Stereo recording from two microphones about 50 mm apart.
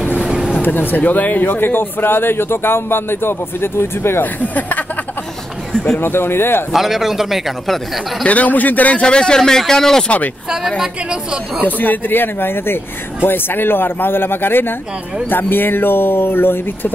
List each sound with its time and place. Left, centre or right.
0.6 s speech: left
4.2 s a man's voice: left
5.7 s speech: centre
5.9 s speech: left
6.7 s a man's voice: centre
8.3 s a man's voice: left
9.0 s speech: centre
10.0 s a man's voice: left
10.8 s a woman's voice: centre
11.6 s speech: left